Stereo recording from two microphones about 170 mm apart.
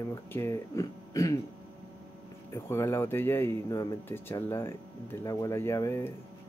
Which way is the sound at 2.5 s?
15° left (ahead or behind).